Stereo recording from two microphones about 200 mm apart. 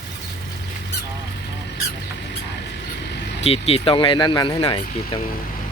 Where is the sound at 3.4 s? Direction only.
30° left (ahead or behind).